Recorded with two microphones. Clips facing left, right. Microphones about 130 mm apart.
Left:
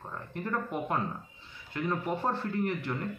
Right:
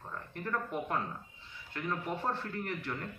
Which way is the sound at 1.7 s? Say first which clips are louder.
Left 5 dB; 20° left (ahead or behind).